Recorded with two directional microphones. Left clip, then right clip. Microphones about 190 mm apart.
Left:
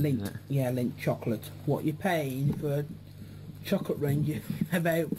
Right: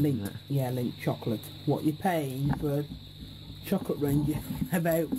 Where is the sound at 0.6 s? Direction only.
30° right (ahead or behind).